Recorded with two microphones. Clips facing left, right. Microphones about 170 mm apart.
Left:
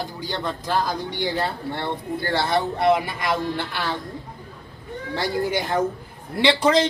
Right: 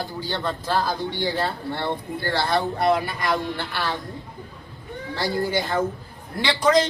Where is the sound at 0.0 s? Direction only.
15° left (ahead or behind).